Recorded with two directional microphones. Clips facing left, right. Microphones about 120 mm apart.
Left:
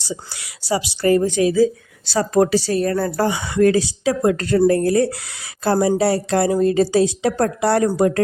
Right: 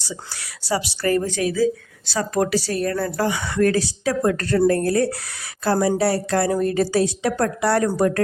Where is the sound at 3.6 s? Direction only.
20° left (ahead or behind).